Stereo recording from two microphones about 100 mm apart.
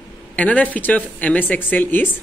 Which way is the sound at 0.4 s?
15° left (ahead or behind).